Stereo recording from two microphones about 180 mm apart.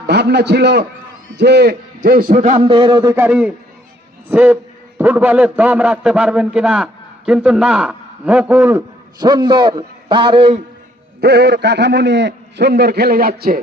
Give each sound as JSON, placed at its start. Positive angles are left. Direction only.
{"t": 0.0, "sound": "a man's voice", "side_deg": -70}
{"t": 2.7, "sound": "a man's voice", "side_deg": -25}
{"t": 9.2, "sound": "a man's voice", "side_deg": -25}
{"t": 11.2, "sound": "a man's voice", "side_deg": -65}